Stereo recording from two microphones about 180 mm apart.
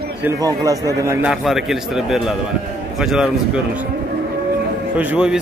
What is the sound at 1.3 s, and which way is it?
A man's voice, centre (ahead or behind).